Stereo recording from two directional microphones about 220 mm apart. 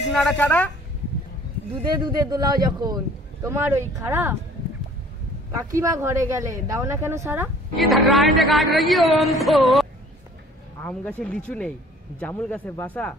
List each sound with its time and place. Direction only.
0.1 s speech: 5° left (ahead or behind)
1.9 s a man's voice: 20° right (ahead or behind)
5.5 s a man's voice: 15° right (ahead or behind); by 13.1 s 5° left (ahead or behind)